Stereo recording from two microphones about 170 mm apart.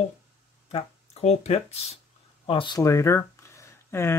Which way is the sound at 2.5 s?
30° left (ahead or behind).